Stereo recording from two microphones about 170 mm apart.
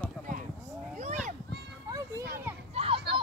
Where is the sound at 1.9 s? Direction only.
20° right (ahead or behind).